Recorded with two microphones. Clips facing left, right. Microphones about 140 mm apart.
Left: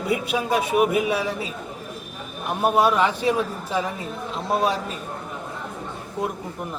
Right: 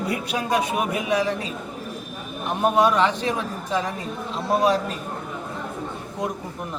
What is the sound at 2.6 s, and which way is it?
A man's voice, 5° left (ahead or behind).